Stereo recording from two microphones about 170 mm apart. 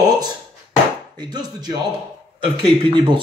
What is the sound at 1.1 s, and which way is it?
Speech, 25° right (ahead or behind).